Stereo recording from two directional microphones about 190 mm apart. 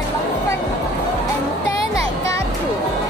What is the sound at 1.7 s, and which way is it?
Music, 15° left (ahead or behind).